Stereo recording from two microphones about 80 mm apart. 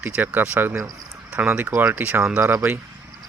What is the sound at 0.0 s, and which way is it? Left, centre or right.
Speech, right.